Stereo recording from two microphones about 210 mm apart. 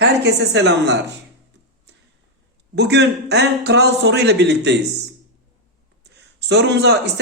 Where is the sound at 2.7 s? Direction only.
55° right (ahead or behind).